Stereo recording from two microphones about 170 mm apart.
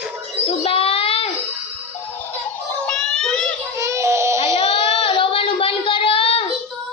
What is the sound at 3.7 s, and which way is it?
Child singing, 20° right (ahead or behind).